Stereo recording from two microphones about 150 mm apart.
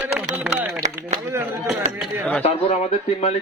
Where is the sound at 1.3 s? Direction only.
20° right (ahead or behind).